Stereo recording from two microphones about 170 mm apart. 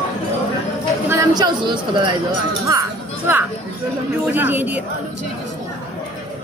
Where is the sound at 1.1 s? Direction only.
20° right (ahead or behind).